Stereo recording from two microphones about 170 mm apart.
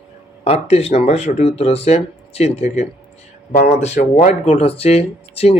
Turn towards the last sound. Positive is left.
turn(degrees=35)  # may be behind; listen again after turning